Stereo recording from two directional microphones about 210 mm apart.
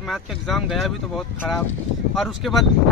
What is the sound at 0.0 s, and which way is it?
Speech, centre (ahead or behind).